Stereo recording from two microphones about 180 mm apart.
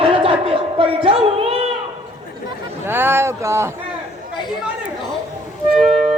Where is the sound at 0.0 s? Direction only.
30° right (ahead or behind).